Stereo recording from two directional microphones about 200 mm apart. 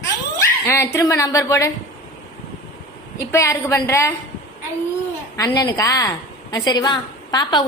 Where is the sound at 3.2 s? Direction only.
15° left (ahead or behind).